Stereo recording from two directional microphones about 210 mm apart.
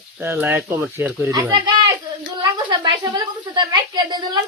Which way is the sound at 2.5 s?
20° right (ahead or behind).